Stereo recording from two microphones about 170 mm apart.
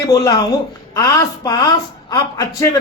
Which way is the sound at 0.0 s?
20° left (ahead or behind).